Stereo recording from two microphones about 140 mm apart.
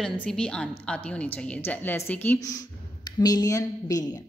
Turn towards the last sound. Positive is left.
turn(degrees=25)  # may be behind; listen again after turning